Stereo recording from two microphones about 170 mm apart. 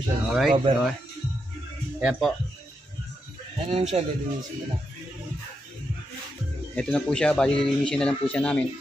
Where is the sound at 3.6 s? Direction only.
40° right (ahead or behind).